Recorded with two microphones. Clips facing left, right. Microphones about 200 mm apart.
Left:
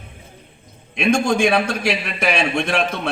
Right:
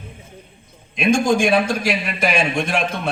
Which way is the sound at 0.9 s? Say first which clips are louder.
Right 1 dB; 60° left (ahead or behind).